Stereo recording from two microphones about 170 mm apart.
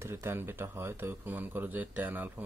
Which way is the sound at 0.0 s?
15° right (ahead or behind).